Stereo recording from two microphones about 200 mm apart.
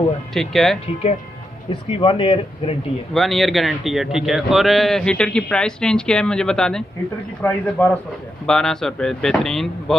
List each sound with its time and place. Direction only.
0.3 s a man's voice: centre (ahead or behind)
1.7 s speech: 25° left (ahead or behind)
3.1 s a man's voice: centre (ahead or behind)